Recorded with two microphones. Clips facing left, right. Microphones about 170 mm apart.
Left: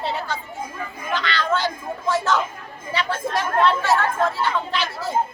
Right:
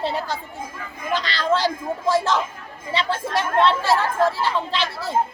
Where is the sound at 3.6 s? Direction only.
30° right (ahead or behind).